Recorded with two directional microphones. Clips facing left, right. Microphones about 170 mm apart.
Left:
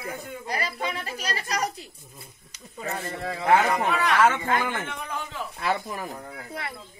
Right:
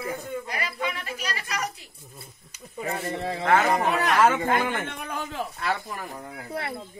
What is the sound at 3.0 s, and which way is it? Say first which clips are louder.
Speech: even; 25° right (ahead or behind).